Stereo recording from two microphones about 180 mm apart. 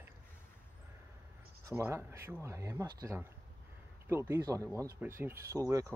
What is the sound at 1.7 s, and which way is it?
Speech, 15° right (ahead or behind).